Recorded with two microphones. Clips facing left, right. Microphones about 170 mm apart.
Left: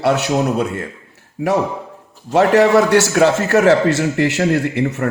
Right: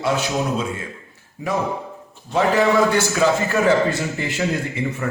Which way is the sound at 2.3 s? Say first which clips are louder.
Left 6 dB; 75° left (ahead or behind).